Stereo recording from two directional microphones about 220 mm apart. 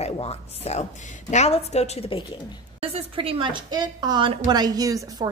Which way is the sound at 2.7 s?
25° right (ahead or behind).